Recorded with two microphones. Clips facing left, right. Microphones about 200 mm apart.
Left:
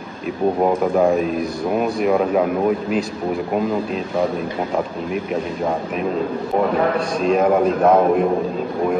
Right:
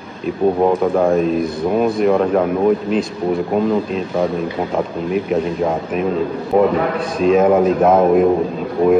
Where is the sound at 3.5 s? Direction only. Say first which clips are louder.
Right 4 dB; centre (ahead or behind).